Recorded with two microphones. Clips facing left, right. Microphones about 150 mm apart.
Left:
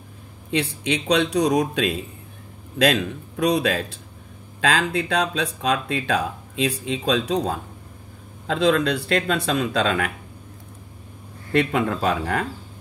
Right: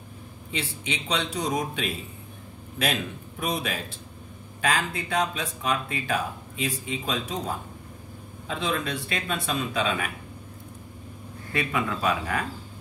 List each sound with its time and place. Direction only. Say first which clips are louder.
0.5 s speech: left 9 dB; 75° left (ahead or behind)
11.5 s speech: left 7 dB; 60° left (ahead or behind)